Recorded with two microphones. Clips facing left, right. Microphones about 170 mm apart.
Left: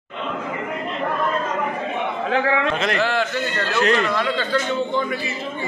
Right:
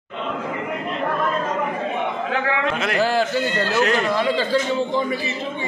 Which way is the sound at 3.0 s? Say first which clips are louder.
Right 6 dB; 35° right (ahead or behind).